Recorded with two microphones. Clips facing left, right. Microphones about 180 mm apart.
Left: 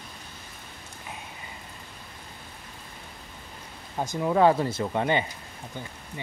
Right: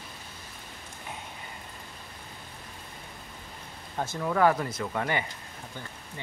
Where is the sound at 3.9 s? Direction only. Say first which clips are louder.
Left 4 dB; 15° left (ahead or behind).